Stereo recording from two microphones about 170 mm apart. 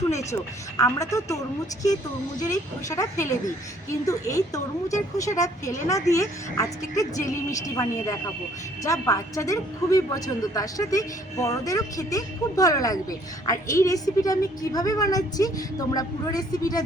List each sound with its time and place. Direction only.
0.1 s a woman's voice: 15° left (ahead or behind)
2.4 s a woman's voice: 20° left (ahead or behind)